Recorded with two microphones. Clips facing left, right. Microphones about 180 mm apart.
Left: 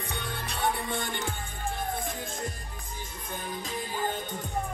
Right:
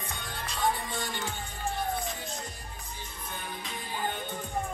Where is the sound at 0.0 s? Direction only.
65° left (ahead or behind).